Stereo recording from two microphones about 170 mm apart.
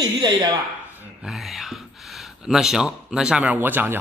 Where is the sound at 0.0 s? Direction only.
25° right (ahead or behind).